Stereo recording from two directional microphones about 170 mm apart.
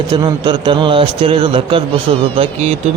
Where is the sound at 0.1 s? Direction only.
25° right (ahead or behind).